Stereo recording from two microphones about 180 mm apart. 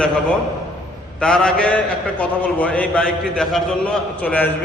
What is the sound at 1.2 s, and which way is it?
A man's voice, 5° left (ahead or behind).